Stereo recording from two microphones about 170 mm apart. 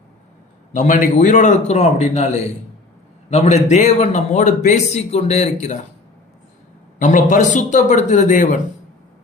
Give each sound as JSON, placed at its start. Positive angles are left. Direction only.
{"t": 0.7, "sound": "a man's voice", "side_deg": 50}
{"t": 7.0, "sound": "a man's voice", "side_deg": 45}